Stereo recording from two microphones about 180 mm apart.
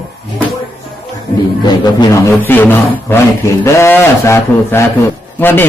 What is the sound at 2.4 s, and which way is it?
A man's voice, 10° left (ahead or behind).